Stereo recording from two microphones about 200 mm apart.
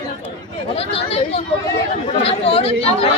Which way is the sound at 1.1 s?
30° left (ahead or behind).